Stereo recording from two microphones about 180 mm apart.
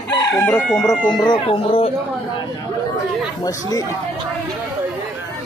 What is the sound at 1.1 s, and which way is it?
Speech, 25° left (ahead or behind).